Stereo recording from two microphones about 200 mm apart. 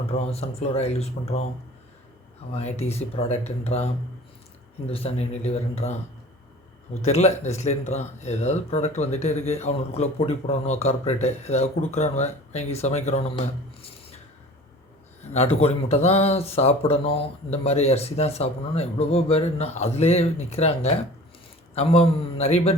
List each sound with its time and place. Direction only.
0.1 s speech: 30° left (ahead or behind)
2.5 s speech: 30° left (ahead or behind)
7.0 s speech: 35° left (ahead or behind)
13.1 s a sound: 30° left (ahead or behind)
15.6 s speech: 30° left (ahead or behind)